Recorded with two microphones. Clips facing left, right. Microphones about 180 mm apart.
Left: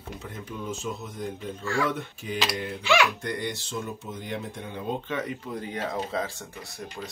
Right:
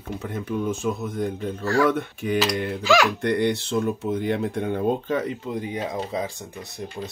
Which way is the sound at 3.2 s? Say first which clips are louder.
Right 10 dB; 65° right (ahead or behind).